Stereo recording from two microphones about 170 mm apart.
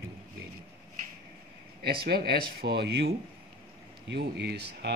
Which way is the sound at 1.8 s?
70° right (ahead or behind).